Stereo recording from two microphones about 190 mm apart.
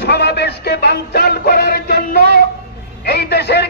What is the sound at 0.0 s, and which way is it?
Music, 60° left (ahead or behind).